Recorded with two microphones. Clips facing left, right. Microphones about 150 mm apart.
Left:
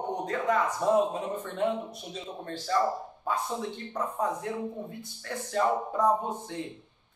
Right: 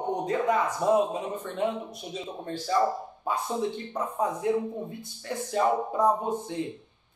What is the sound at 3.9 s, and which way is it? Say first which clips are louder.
A man's voice: right 1 dB; 15° right (ahead or behind).